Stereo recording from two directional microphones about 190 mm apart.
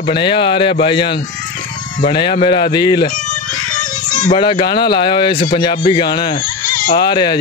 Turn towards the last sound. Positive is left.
turn(degrees=25)  # may be behind; listen again after turning